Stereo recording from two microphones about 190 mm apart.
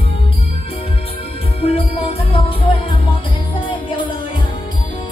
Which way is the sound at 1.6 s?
30° left (ahead or behind).